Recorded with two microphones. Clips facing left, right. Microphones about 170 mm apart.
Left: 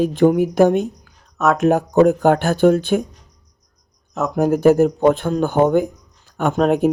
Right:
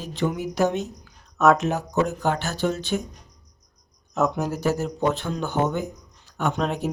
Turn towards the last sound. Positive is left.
turn(degrees=55)  # may be behind; listen again after turning